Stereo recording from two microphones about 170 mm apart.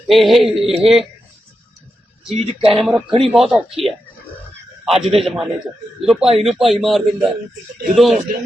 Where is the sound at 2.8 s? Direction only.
Centre (ahead or behind).